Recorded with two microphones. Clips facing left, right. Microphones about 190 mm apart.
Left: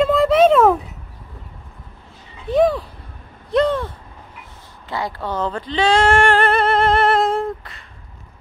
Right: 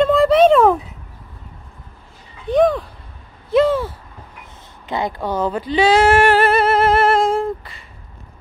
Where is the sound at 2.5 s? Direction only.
Centre (ahead or behind).